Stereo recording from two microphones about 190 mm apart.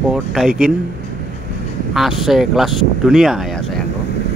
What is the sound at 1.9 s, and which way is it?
Speech, centre (ahead or behind).